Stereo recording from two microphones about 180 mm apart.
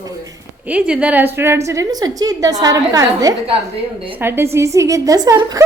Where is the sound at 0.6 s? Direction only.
5° right (ahead or behind).